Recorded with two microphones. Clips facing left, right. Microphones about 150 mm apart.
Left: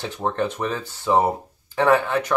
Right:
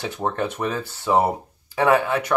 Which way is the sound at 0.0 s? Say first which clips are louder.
Left 1 dB; 5° right (ahead or behind).